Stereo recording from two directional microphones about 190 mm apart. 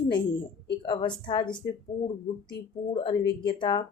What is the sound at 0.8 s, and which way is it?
Speech, 25° left (ahead or behind).